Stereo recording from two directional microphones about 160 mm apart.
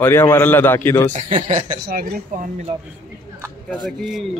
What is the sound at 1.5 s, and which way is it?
Speech, 65° right (ahead or behind).